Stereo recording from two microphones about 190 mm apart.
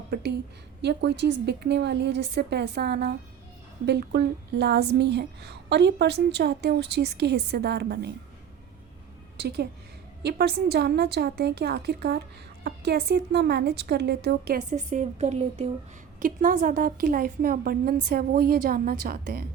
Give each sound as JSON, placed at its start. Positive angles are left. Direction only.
{"t": 0.1, "sound": "a woman's voice", "side_deg": -60}
{"t": 9.4, "sound": "a woman's voice", "side_deg": -55}
{"t": 14.7, "sound": "a woman's voice", "side_deg": -40}